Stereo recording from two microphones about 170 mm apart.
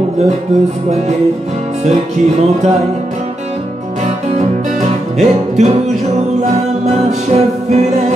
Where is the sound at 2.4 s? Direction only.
40° right (ahead or behind).